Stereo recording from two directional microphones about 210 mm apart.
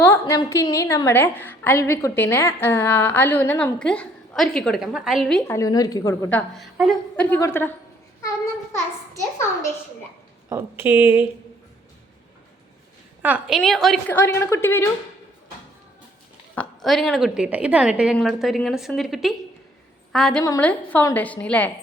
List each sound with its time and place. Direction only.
0.0 s a woman's voice: 10° left (ahead or behind)
5.5 s a woman's voice: 15° left (ahead or behind)
6.6 s a woman's voice: centre (ahead or behind)
7.3 s a woman's voice: 10° left (ahead or behind)
10.5 s a woman's voice: 10° right (ahead or behind)
13.2 s a woman's voice: 5° right (ahead or behind); by 14.8 s 10° left (ahead or behind)
16.6 s a woman's voice: centre (ahead or behind)